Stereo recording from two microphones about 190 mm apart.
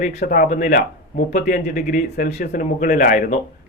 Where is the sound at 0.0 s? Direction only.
35° left (ahead or behind).